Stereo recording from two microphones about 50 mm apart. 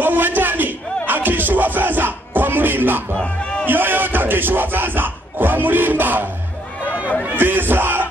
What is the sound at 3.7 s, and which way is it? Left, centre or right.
Music, right.